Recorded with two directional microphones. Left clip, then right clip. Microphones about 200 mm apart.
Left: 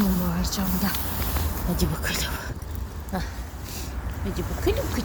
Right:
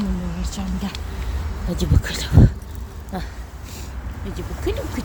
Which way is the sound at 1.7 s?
20° right (ahead or behind).